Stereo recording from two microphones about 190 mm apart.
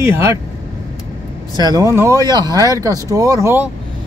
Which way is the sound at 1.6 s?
20° right (ahead or behind).